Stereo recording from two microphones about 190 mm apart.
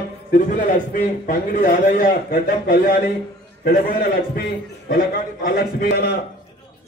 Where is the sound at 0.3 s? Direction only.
45° left (ahead or behind).